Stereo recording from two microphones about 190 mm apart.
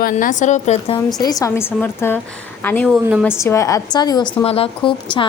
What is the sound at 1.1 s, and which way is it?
A woman's voice, 20° left (ahead or behind).